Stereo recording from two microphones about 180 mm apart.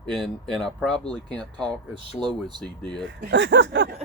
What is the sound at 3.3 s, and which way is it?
Speech, 90° right.